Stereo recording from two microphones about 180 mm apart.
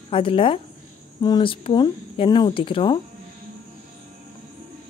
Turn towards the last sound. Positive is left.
turn(degrees=30)  # may be behind; listen again after turning